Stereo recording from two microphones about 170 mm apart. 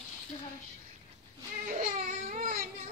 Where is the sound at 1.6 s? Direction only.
50° right (ahead or behind).